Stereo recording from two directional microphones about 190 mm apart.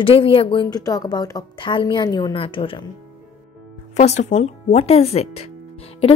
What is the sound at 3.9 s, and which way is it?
Speech, 35° left (ahead or behind).